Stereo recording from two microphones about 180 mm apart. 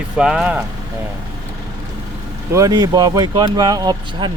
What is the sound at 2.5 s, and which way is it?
Speech, 20° right (ahead or behind).